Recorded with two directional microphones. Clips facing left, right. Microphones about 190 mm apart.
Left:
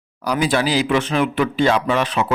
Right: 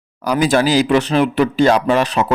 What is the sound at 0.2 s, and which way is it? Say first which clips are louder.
Speech: right 4 dB; 50° right (ahead or behind).